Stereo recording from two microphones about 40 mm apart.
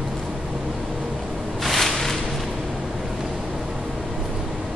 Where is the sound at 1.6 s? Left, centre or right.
Centre.